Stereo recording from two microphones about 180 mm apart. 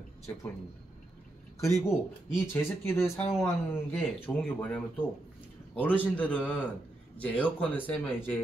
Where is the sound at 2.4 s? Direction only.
10° left (ahead or behind).